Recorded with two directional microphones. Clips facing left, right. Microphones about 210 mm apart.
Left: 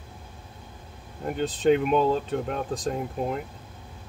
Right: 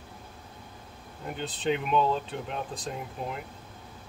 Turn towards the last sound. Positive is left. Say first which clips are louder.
# left 7 dB
turn(degrees=45)  # may be behind; listen again after turning